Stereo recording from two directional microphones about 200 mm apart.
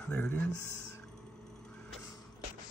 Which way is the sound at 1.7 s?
5° left (ahead or behind).